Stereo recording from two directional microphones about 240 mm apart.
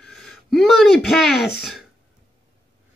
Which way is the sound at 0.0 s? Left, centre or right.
Centre.